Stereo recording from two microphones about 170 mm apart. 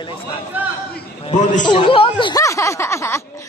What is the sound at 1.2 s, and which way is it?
Speech, 45° left (ahead or behind).